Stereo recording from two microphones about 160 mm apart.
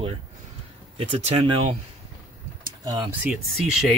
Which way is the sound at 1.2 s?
45° right (ahead or behind).